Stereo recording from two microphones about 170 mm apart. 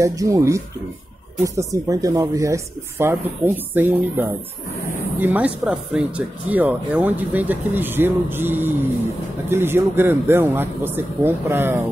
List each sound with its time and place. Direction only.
0.0 s speech: 20° right (ahead or behind)
1.6 s speech: 20° right (ahead or behind)